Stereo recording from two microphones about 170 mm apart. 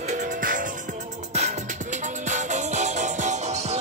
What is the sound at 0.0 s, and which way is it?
Music, 45° right (ahead or behind).